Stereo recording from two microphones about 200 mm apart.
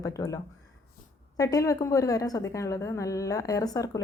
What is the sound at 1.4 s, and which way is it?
Speech, 15° left (ahead or behind).